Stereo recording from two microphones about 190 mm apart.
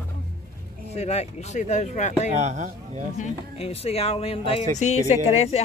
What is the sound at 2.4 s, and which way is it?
Speech, 40° right (ahead or behind).